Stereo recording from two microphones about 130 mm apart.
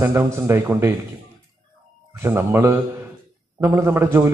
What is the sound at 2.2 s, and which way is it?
A man's voice, 20° right (ahead or behind).